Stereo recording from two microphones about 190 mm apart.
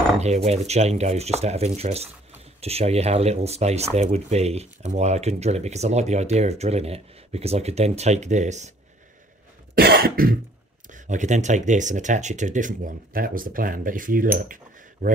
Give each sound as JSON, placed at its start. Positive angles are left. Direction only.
{"t": 0.2, "sound": "speech", "side_deg": -35}
{"t": 9.8, "sound": "cough", "side_deg": -55}
{"t": 10.9, "sound": "speech", "side_deg": -40}
{"t": 14.5, "sound": "cutlery", "side_deg": -45}